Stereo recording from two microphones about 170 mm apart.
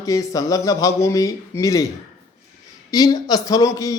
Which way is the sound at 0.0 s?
20° left (ahead or behind).